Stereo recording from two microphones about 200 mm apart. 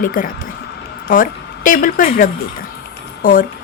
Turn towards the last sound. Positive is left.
turn(degrees=45)  # may be behind; listen again after turning